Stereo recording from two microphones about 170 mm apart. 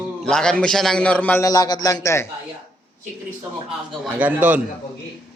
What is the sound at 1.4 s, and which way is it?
Speech, 20° left (ahead or behind).